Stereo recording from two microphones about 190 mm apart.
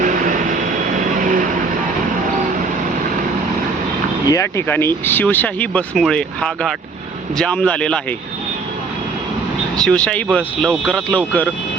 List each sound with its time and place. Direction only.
0.0 s vehicle: 45° right (ahead or behind)
4.3 s speech: 15° left (ahead or behind)
9.7 s speech: 5° left (ahead or behind)